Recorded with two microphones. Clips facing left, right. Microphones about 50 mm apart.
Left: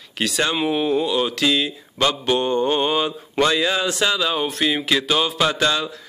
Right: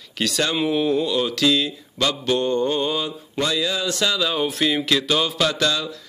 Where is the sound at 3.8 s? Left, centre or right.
Left.